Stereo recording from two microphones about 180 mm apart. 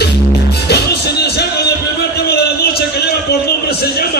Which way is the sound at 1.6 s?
65° left (ahead or behind).